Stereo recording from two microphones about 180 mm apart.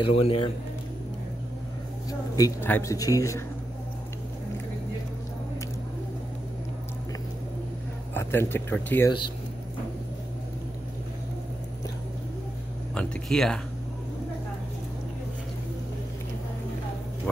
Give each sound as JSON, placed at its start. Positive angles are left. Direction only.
{"t": 0.0, "sound": "speech", "side_deg": 30}
{"t": 2.0, "sound": "speech", "side_deg": 20}
{"t": 8.1, "sound": "speech", "side_deg": 15}
{"t": 12.9, "sound": "speech", "side_deg": 5}